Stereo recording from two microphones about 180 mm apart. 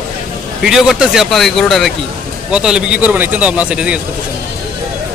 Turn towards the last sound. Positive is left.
turn(degrees=-5)  # may be behind; listen again after turning